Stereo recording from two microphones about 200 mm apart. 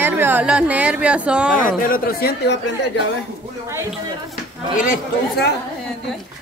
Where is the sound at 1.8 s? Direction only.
45° left (ahead or behind).